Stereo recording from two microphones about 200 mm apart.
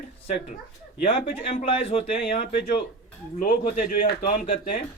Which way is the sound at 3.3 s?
45° left (ahead or behind).